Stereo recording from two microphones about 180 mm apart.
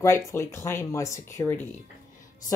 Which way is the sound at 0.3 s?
15° left (ahead or behind).